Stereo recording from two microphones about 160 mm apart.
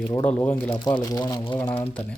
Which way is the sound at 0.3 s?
10° left (ahead or behind).